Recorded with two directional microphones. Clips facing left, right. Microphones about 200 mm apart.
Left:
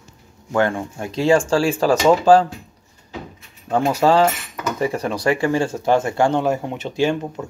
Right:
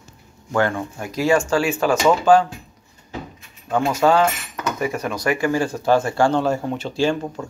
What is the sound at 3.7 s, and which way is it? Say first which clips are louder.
Speech: left 1 dB; 35° left (ahead or behind).